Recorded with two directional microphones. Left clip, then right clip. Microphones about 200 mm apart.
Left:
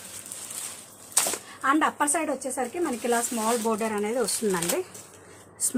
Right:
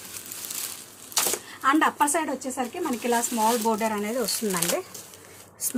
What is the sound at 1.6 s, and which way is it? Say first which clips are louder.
A woman's voice: right 2 dB; 10° left (ahead or behind).